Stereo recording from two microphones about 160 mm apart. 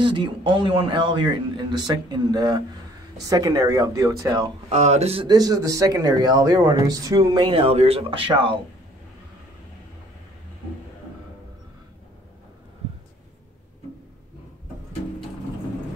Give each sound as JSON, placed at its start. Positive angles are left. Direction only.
{"t": 0.0, "sound": "speech", "side_deg": -30}
{"t": 4.6, "sound": "speech", "side_deg": -45}